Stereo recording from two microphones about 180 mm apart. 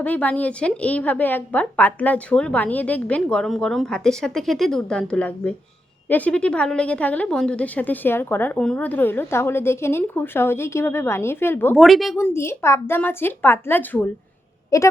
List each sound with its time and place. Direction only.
0.0 s a woman's voice: 10° left (ahead or behind)
11.8 s speech: centre (ahead or behind)
12.1 s a woman's voice: 15° left (ahead or behind)